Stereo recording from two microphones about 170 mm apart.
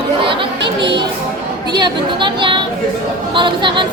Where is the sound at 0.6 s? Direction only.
90° right.